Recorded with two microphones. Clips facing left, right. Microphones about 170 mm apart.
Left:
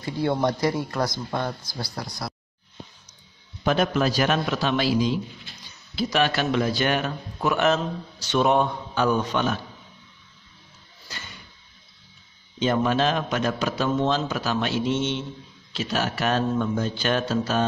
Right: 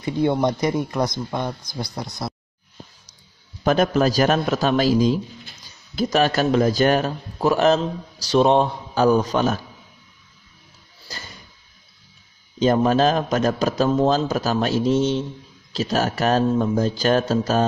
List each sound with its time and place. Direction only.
0.0 s speech: 20° right (ahead or behind)
3.6 s a man's voice: 45° right (ahead or behind)
11.1 s a sound: 35° right (ahead or behind)
12.5 s a man's voice: 40° right (ahead or behind)